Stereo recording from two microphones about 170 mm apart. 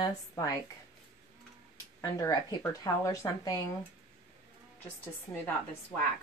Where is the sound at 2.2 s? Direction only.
20° left (ahead or behind).